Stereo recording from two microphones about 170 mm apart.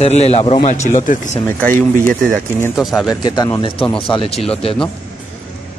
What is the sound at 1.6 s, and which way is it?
Speech, 15° left (ahead or behind).